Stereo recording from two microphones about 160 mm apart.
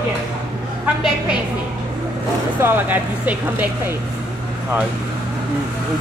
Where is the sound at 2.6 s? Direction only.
10° right (ahead or behind).